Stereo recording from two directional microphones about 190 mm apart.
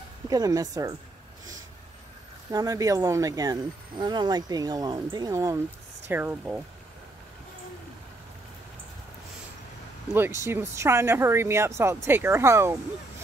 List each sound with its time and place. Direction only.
0.3 s speech: 20° right (ahead or behind)
2.5 s speech: 20° right (ahead or behind)
10.1 s speech: 15° right (ahead or behind)